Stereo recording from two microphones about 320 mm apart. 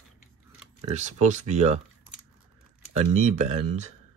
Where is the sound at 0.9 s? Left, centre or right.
Right.